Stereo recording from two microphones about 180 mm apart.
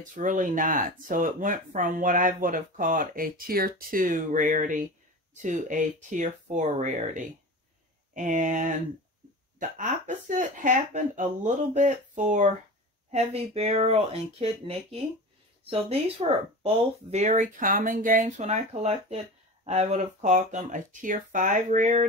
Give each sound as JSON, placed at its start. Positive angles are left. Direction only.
{"t": 0.1, "sound": "speech", "side_deg": -45}